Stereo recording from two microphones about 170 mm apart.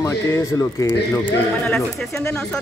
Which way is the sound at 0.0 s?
20° left (ahead or behind).